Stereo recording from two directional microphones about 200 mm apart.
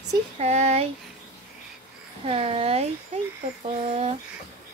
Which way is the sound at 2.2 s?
30° right (ahead or behind).